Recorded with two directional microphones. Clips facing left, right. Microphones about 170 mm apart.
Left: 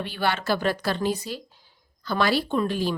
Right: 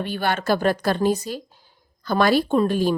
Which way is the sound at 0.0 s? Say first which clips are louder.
Right 3 dB; 45° right (ahead or behind).